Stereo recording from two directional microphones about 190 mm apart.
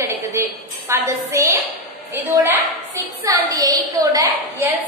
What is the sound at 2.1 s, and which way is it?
A woman's voice, 10° right (ahead or behind).